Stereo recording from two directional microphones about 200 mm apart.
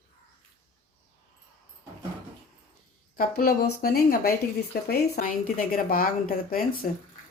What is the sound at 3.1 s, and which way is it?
Speech, 50° left (ahead or behind).